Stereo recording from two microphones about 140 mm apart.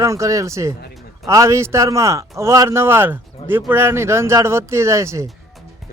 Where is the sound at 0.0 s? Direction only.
20° right (ahead or behind).